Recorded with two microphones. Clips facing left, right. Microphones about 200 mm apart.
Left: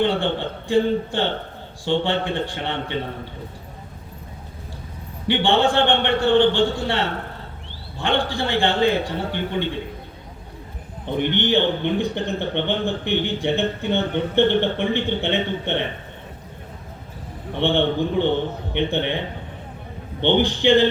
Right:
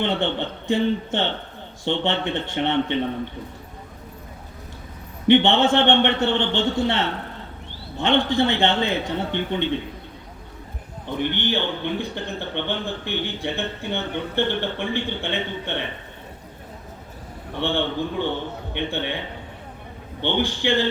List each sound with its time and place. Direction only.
0.2 s a man's voice: 20° right (ahead or behind)
5.3 s a man's voice: 20° right (ahead or behind)
11.0 s a man's voice: 20° left (ahead or behind)
17.6 s a man's voice: 20° left (ahead or behind)
20.2 s a man's voice: 20° left (ahead or behind)